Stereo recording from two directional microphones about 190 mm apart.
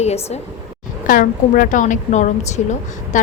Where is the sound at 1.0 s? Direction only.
45° left (ahead or behind).